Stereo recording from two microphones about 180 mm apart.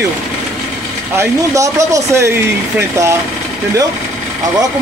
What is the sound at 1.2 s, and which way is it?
Speech, 15° right (ahead or behind).